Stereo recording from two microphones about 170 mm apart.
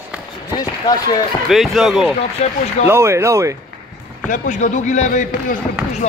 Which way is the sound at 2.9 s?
15° right (ahead or behind).